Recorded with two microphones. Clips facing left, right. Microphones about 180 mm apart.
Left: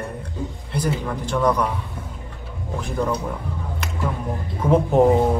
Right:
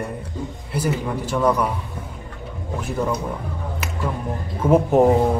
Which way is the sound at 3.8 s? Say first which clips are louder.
Right 1 dB; 5° right (ahead or behind).